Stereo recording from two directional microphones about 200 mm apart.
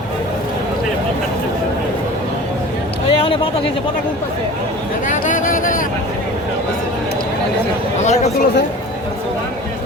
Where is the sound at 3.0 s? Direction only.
25° left (ahead or behind).